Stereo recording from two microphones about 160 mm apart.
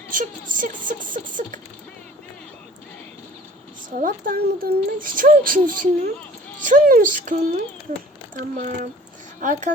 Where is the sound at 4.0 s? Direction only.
60° right (ahead or behind).